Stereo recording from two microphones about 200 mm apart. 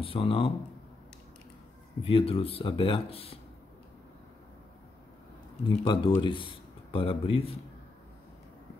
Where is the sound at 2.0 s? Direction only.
30° left (ahead or behind).